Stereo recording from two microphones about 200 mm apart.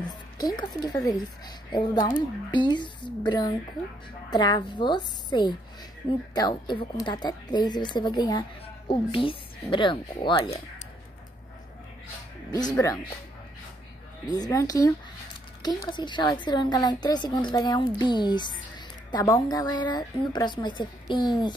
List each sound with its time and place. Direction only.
0.1 s a woman's voice: 20° left (ahead or behind)
12.4 s a woman's voice: 20° left (ahead or behind)
14.3 s a woman's voice: 20° left (ahead or behind)